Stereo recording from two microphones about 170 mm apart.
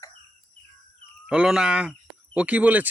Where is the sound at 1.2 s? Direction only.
5° right (ahead or behind).